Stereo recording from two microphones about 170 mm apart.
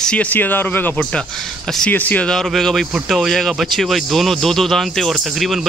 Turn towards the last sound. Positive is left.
turn(degrees=0)  # may be behind; listen again after turning